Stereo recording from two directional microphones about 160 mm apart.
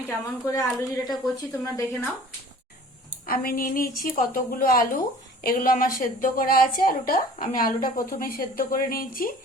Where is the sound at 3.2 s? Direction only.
65° left (ahead or behind).